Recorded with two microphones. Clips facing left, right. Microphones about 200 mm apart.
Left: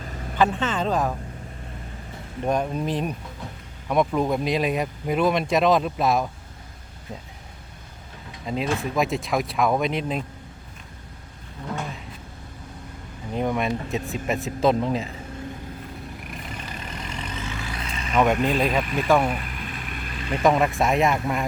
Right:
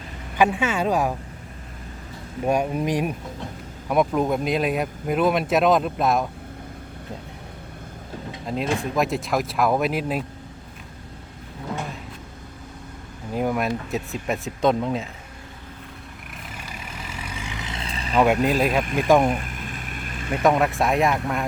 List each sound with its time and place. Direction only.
0.3 s speech: 10° right (ahead or behind)
2.4 s speech: 10° right (ahead or behind)
8.4 s speech: centre (ahead or behind)
13.3 s speech: 5° right (ahead or behind)
16.3 s vehicle: 5° right (ahead or behind); by 18.2 s 30° right (ahead or behind)
18.4 s speech: 5° right (ahead or behind)
19.2 s a sound: 45° right (ahead or behind)
20.3 s speech: centre (ahead or behind)